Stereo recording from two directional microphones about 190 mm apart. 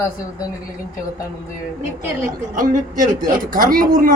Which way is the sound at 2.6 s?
45° right (ahead or behind).